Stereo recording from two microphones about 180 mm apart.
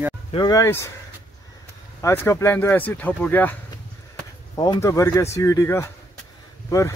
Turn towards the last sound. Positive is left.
turn(degrees=20)  # may be behind; listen again after turning